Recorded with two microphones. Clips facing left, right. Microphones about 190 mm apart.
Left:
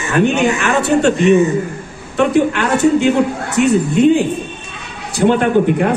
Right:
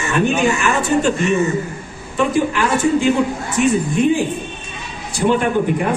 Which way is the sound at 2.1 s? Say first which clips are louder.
Left 4 dB; 65° left (ahead or behind).